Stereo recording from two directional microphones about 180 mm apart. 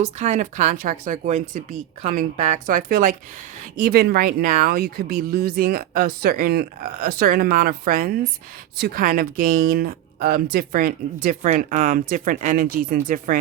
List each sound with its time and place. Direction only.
0.0 s speech: 40° right (ahead or behind)